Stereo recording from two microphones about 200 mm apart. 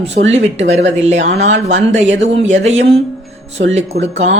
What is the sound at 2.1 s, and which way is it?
Speech, 65° right (ahead or behind).